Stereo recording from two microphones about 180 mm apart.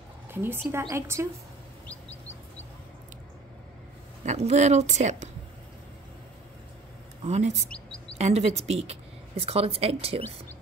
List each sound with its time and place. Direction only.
0.3 s a woman's voice: 10° right (ahead or behind)
4.2 s a woman's voice: 40° right (ahead or behind)
7.2 s a woman's voice: 40° right (ahead or behind)